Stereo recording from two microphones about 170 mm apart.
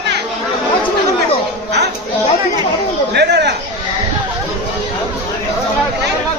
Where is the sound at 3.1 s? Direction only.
80° right.